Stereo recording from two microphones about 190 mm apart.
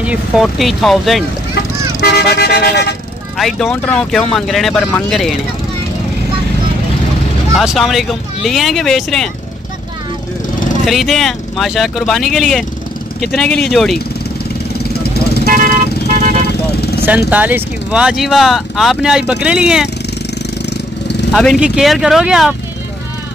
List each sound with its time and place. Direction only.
0.0 s speech: 5° right (ahead or behind)
1.5 s speech: 55° left (ahead or behind)
3.3 s speech: centre (ahead or behind)
7.5 s speech: centre (ahead or behind)
10.9 s speech: centre (ahead or behind)
15.4 s vehicle: 45° right (ahead or behind)
17.3 s speech: 10° right (ahead or behind)
20.7 s vehicle: 65° left (ahead or behind)
21.3 s speech: centre (ahead or behind)